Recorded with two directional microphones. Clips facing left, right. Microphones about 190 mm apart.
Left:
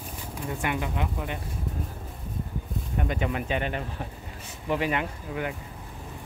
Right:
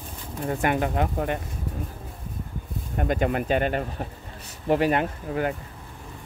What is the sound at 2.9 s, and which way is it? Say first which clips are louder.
Speech: right 5 dB; 45° right (ahead or behind).